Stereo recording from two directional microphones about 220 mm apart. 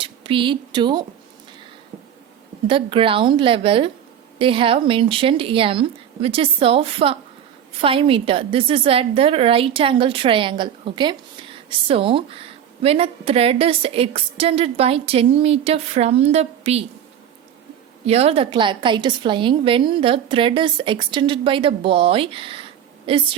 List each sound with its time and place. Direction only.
0.0 s speech: 25° right (ahead or behind)
2.6 s a woman's voice: 25° right (ahead or behind)
18.0 s a woman's voice: 25° right (ahead or behind)